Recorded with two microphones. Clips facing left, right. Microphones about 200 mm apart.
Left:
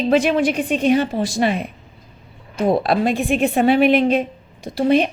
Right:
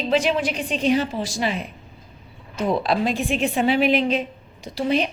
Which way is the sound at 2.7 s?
55° left (ahead or behind).